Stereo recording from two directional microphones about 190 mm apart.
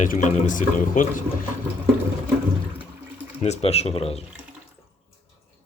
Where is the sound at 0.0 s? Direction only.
40° left (ahead or behind).